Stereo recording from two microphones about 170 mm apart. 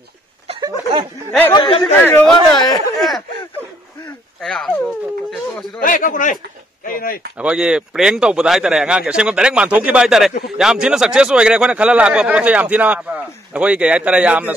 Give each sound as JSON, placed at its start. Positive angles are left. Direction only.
{"t": 0.5, "sound": "a sound", "side_deg": -30}
{"t": 1.5, "sound": "speech", "side_deg": 25}
{"t": 2.0, "sound": "speech", "side_deg": 10}
{"t": 3.0, "sound": "speech", "side_deg": 0}
{"t": 4.4, "sound": "speech", "side_deg": 0}
{"t": 5.8, "sound": "speech", "side_deg": 55}
{"t": 7.3, "sound": "speech", "side_deg": -5}